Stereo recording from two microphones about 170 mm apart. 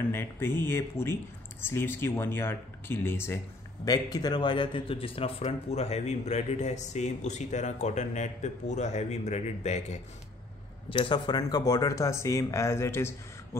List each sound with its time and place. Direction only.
0.1 s speech: 15° left (ahead or behind); by 9.9 s 40° left (ahead or behind)
10.9 s speech: 30° left (ahead or behind)